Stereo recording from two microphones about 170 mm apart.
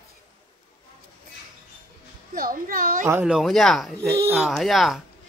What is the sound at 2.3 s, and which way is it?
Speech, 55° right (ahead or behind).